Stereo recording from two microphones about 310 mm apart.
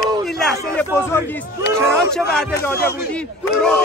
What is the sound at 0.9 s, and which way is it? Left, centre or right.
A man's voice, centre.